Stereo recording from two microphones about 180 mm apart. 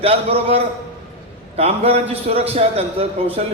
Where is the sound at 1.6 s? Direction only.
35° right (ahead or behind).